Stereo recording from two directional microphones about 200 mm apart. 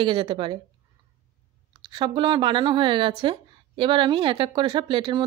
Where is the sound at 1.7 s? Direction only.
20° right (ahead or behind).